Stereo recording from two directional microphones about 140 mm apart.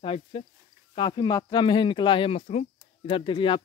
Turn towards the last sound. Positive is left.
turn(degrees=35)  # may be behind; listen again after turning